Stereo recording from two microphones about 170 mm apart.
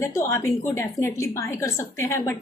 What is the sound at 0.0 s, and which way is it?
A woman's voice, 15° left (ahead or behind).